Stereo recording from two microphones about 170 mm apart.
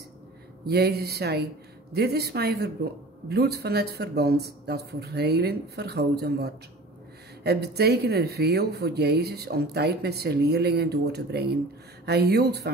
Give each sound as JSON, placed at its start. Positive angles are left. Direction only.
{"t": 0.7, "sound": "speech", "side_deg": -70}